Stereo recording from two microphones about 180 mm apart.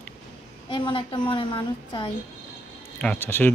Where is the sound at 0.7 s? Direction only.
25° left (ahead or behind).